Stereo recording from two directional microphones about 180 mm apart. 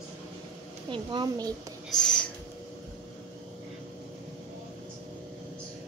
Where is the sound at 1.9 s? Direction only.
5° left (ahead or behind).